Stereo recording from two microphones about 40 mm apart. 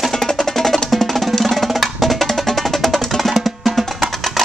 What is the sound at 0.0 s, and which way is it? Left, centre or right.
Music, centre.